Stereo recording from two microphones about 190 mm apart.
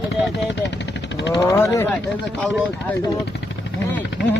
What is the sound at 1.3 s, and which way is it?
Speech, 15° left (ahead or behind).